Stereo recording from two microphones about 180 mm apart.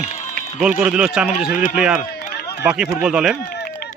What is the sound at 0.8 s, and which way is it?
Speech, 5° right (ahead or behind).